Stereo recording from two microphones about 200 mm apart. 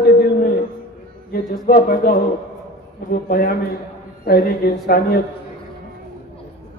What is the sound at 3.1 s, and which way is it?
Speech, 45° left (ahead or behind).